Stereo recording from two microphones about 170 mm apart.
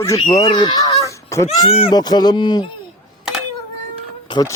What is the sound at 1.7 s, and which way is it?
Speech, 30° left (ahead or behind).